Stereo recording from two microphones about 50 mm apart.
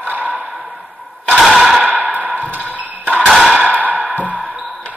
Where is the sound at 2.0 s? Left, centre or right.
Right.